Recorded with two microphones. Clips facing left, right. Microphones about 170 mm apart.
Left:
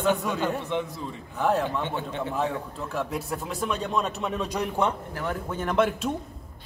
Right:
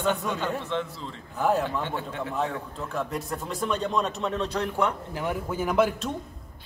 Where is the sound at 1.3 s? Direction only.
Centre (ahead or behind).